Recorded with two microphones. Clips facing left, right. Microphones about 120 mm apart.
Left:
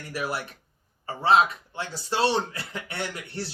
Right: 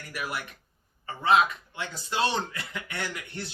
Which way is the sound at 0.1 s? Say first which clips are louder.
Left 4 dB; 30° left (ahead or behind).